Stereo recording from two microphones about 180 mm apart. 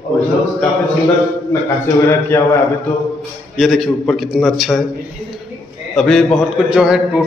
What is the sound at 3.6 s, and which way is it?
A man's voice, centre (ahead or behind).